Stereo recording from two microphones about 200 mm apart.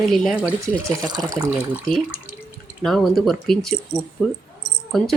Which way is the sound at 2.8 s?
Centre (ahead or behind).